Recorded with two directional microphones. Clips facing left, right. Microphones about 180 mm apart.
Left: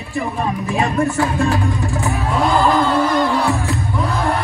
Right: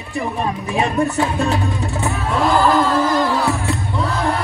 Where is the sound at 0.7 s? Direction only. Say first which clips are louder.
Even; 20° right (ahead or behind).